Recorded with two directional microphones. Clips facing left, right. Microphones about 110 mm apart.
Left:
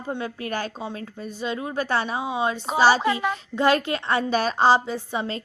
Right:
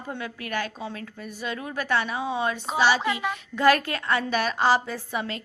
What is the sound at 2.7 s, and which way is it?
Speech, 35° left (ahead or behind).